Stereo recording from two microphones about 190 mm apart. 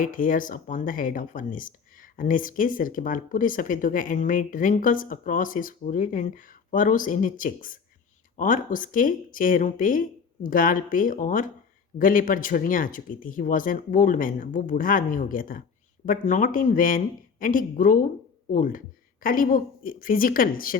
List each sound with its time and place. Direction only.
0.0 s speech: 45° left (ahead or behind)